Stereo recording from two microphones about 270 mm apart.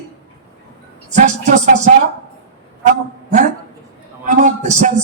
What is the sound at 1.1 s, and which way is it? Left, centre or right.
Music, right.